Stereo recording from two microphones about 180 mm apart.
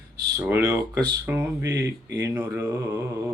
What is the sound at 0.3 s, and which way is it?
Speech, 15° right (ahead or behind).